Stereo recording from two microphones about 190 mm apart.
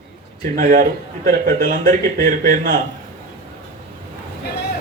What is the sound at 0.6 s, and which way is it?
A man's voice, 45° right (ahead or behind).